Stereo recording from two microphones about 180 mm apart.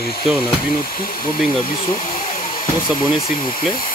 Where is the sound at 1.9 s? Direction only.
45° left (ahead or behind).